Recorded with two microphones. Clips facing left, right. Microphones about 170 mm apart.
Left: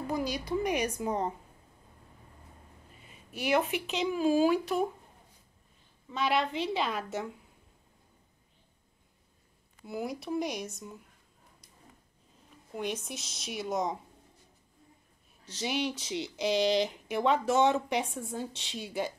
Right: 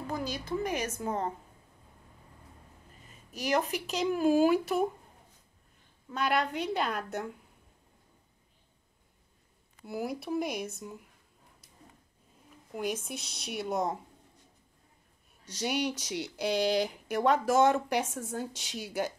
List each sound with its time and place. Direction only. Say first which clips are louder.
0.0 s a woman's voice: left 3 dB; 10° left (ahead or behind)
3.1 s a sound: left 1 dB; 40° right (ahead or behind)
3.6 s speech: left 1 dB; 40° right (ahead or behind)
3.9 s speech: right 2 dB; centre (ahead or behind)
6.0 s speech: even; centre (ahead or behind)
9.8 s speech: right 1 dB; centre (ahead or behind)
12.7 s speech: right 1 dB; 5° right (ahead or behind)
15.5 s speech: right 1 dB; centre (ahead or behind)